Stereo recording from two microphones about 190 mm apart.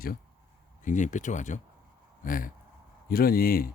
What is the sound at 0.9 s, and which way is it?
Speech, 40° left (ahead or behind).